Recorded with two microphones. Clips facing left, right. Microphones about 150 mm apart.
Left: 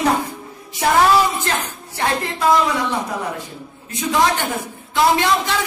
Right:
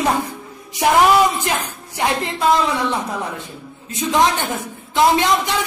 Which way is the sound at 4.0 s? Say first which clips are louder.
Right 1 dB; 20° right (ahead or behind).